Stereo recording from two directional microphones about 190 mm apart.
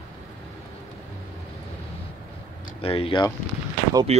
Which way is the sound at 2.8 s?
30° left (ahead or behind).